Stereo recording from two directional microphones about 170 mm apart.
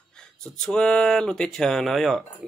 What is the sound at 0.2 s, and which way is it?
Speech, 5° left (ahead or behind).